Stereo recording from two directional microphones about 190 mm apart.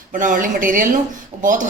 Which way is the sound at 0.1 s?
45° right (ahead or behind).